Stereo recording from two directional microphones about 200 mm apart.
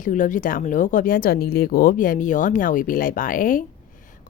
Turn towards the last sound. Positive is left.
turn(degrees=45)  # may be behind; listen again after turning